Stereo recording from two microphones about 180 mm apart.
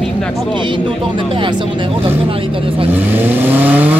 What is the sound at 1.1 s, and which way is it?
Speech, 30° right (ahead or behind).